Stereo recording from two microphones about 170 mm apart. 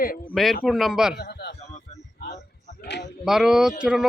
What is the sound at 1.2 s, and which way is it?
Speech, 70° left (ahead or behind).